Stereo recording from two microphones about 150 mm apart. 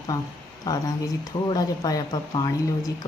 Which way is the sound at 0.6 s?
25° left (ahead or behind).